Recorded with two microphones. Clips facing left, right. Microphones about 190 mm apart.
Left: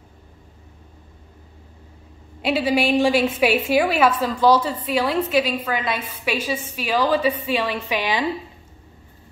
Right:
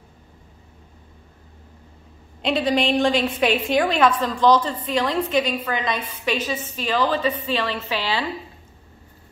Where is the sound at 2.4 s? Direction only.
5° left (ahead or behind).